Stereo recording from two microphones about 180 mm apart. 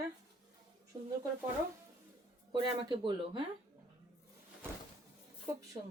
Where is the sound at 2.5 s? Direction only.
25° right (ahead or behind).